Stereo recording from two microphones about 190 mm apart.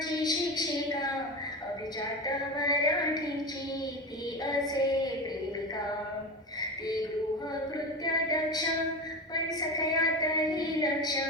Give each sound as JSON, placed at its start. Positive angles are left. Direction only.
{"t": 0.0, "sound": "a sound", "side_deg": 20}
{"t": 2.2, "sound": "a woman's voice", "side_deg": 20}
{"t": 4.5, "sound": "a woman's voice", "side_deg": 20}
{"t": 6.6, "sound": "music", "side_deg": 20}
{"t": 8.0, "sound": "a woman's voice", "side_deg": 20}